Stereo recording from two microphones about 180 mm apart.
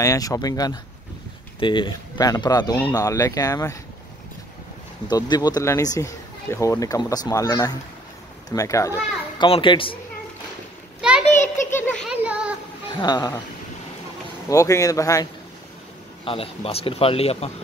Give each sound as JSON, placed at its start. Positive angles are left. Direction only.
{"t": 0.0, "sound": "speech", "side_deg": 20}
{"t": 5.1, "sound": "speech", "side_deg": 20}
{"t": 9.4, "sound": "speech", "side_deg": 25}
{"t": 11.0, "sound": "a sound", "side_deg": -5}
{"t": 11.4, "sound": "a sound", "side_deg": 15}
{"t": 12.0, "sound": "a sound", "side_deg": -5}
{"t": 12.9, "sound": "speech", "side_deg": 25}
{"t": 14.5, "sound": "speech", "side_deg": 20}
{"t": 16.3, "sound": "a man's voice", "side_deg": 30}